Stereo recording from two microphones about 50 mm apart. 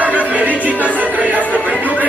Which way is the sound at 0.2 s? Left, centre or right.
Right.